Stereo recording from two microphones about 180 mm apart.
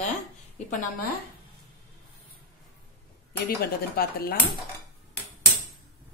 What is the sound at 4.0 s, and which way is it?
Speech, 60° left (ahead or behind).